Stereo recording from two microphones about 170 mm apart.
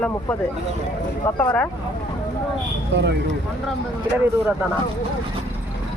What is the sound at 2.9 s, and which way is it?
Speech, 90° right.